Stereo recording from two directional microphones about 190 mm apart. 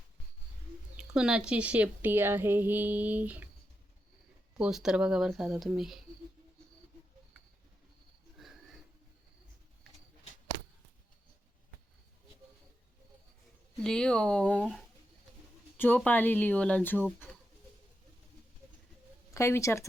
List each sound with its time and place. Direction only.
0.9 s a woman's voice: 5° right (ahead or behind)
4.5 s speech: 5° right (ahead or behind)
8.4 s a sound: centre (ahead or behind)
13.8 s speech: 5° left (ahead or behind)
15.8 s speech: 10° left (ahead or behind)
19.3 s speech: 15° left (ahead or behind)